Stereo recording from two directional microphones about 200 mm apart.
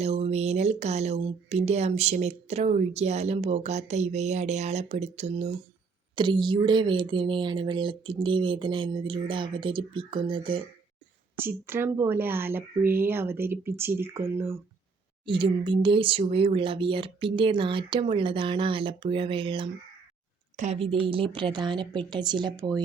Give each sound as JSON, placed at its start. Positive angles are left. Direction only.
{"t": 0.0, "sound": "speech", "side_deg": -30}
{"t": 6.1, "sound": "speech", "side_deg": -25}
{"t": 11.3, "sound": "speech", "side_deg": -10}
{"t": 15.3, "sound": "speech", "side_deg": -25}